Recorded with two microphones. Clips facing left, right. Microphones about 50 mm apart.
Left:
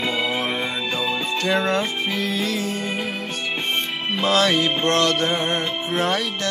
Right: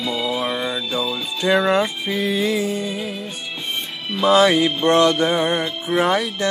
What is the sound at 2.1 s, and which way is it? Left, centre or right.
Speech, centre.